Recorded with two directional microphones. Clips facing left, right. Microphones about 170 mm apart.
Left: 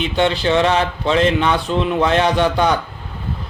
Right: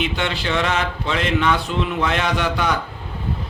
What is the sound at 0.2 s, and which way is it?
A man's voice, 30° left (ahead or behind).